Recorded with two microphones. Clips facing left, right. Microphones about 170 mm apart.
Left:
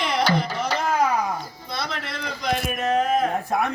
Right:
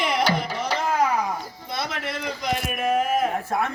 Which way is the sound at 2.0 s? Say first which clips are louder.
Right 3 dB; 45° right (ahead or behind).